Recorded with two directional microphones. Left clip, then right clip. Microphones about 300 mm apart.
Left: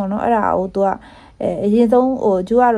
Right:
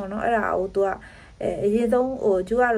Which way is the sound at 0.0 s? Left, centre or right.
Left.